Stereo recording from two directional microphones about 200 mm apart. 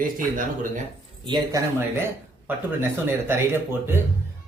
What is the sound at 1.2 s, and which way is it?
Speech, 20° right (ahead or behind).